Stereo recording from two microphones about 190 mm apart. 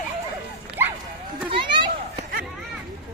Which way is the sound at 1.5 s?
25° right (ahead or behind).